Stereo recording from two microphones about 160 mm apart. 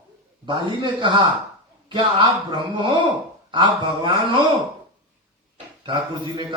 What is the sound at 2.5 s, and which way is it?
A man's voice, 30° right (ahead or behind).